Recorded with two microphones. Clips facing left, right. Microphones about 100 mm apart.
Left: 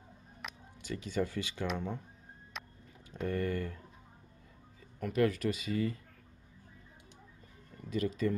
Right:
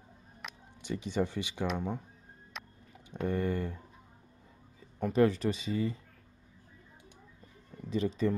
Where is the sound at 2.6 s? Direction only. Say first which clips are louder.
Even; centre (ahead or behind).